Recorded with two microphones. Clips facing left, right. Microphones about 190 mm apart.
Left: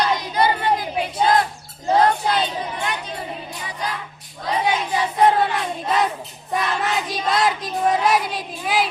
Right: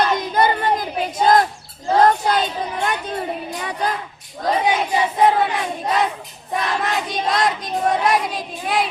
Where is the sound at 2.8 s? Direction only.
50° right (ahead or behind).